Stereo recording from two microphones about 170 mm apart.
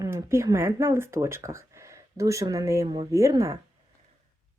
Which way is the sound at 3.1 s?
20° right (ahead or behind).